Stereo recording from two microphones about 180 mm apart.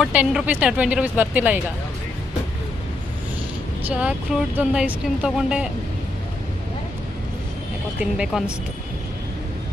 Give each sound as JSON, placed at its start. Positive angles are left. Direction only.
{"t": 0.0, "sound": "speech", "side_deg": -5}
{"t": 3.9, "sound": "speech", "side_deg": -5}
{"t": 8.0, "sound": "speech", "side_deg": -5}